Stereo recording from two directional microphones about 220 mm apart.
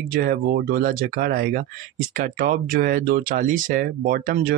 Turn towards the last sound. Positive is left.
turn(degrees=-40)  # may be behind; listen again after turning